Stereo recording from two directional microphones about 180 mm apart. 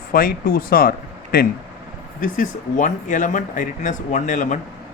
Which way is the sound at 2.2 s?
45° left (ahead or behind).